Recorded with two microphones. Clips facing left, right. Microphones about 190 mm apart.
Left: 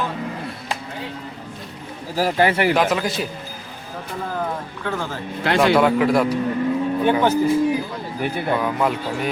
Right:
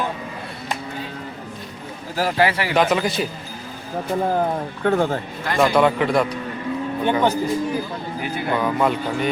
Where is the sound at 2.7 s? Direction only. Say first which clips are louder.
Right 1 dB; centre (ahead or behind).